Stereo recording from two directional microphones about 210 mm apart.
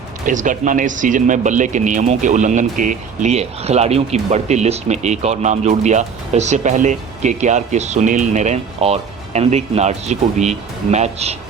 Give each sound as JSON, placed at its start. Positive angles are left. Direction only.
{"t": 0.3, "sound": "speech", "side_deg": -35}